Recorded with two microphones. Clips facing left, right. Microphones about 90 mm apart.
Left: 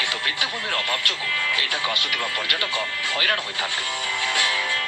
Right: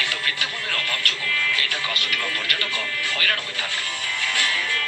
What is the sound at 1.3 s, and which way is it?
Speech, 20° left (ahead or behind).